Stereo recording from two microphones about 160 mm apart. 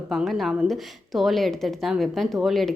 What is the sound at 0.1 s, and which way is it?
A woman's voice, centre (ahead or behind).